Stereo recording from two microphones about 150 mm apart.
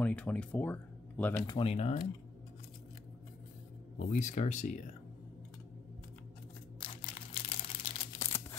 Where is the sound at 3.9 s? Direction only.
55° left (ahead or behind).